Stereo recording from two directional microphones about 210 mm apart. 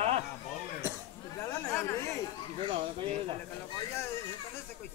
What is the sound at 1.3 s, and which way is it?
Chatter, 15° left (ahead or behind).